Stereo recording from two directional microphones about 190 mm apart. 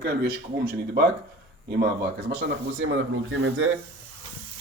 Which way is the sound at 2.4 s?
65° right (ahead or behind).